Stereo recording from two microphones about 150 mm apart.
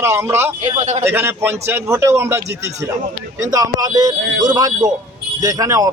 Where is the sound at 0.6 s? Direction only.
45° right (ahead or behind).